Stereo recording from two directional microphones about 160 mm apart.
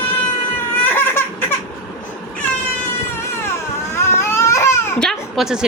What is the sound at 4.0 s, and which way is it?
Baby cry, 15° left (ahead or behind).